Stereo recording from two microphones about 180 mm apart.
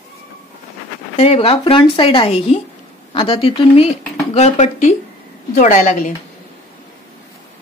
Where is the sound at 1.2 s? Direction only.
35° left (ahead or behind).